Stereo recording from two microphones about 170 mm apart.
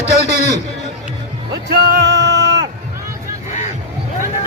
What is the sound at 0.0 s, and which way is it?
Speech, 40° left (ahead or behind).